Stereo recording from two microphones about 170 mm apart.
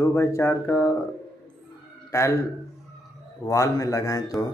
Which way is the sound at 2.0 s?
15° left (ahead or behind).